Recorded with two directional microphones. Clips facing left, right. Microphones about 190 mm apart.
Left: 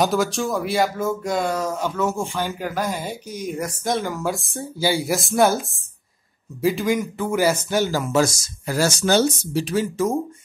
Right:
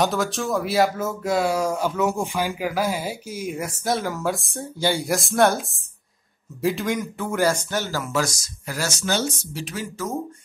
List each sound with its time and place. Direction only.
0.0 s speech: centre (ahead or behind); by 9.8 s 35° left (ahead or behind)